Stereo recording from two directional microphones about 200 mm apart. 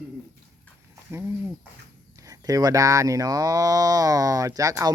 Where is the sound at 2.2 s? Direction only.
15° right (ahead or behind).